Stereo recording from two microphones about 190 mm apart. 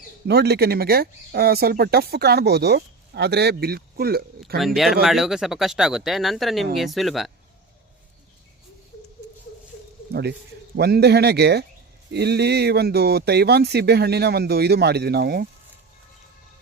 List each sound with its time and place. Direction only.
0.3 s speech: 60° right (ahead or behind)
4.5 s speech: centre (ahead or behind)
10.1 s bird: 60° right (ahead or behind)
10.8 s speech: 55° right (ahead or behind)